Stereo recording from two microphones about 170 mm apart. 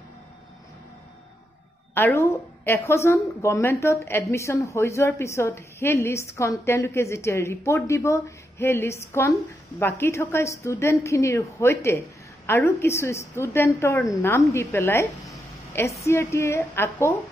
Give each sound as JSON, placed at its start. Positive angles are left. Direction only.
{"t": 2.0, "sound": "a woman's voice", "side_deg": 15}